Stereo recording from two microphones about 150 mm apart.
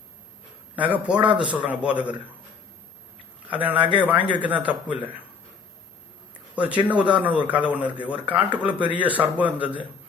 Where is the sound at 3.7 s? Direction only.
35° right (ahead or behind).